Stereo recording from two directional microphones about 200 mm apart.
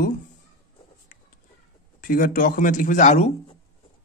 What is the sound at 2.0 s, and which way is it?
Speech, 45° left (ahead or behind).